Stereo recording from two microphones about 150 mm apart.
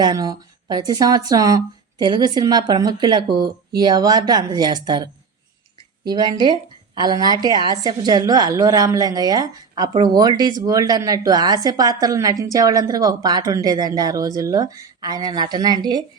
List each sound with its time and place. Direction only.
0.0 s a woman's voice: 25° right (ahead or behind)
6.1 s a woman's voice: 30° right (ahead or behind)